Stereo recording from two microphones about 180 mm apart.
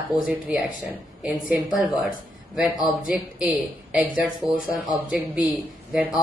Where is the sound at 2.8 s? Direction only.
45° left (ahead or behind).